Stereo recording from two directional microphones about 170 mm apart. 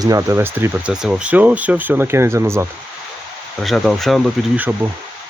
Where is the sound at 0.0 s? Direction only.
20° right (ahead or behind).